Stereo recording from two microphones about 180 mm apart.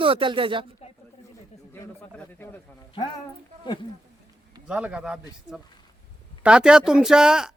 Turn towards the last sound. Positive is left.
turn(degrees=-5)  # may be behind; listen again after turning